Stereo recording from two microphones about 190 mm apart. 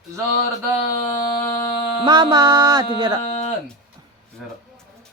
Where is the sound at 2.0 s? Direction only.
25° right (ahead or behind).